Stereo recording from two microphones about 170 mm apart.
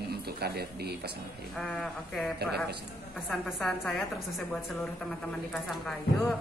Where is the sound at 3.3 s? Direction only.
Centre (ahead or behind).